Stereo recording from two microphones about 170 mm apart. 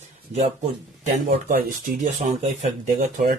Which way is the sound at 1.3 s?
55° right (ahead or behind).